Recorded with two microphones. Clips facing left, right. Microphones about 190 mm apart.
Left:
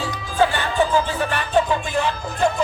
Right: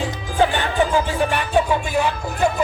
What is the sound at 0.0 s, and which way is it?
Music, 15° right (ahead or behind).